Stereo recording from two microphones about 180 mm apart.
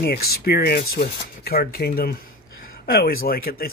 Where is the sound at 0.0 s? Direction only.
60° left (ahead or behind).